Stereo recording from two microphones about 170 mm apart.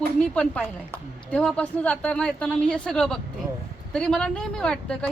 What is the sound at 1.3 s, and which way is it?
A woman's voice, 5° left (ahead or behind).